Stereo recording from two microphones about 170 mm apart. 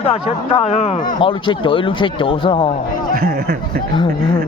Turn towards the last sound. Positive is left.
turn(degrees=-65)  # may be behind; listen again after turning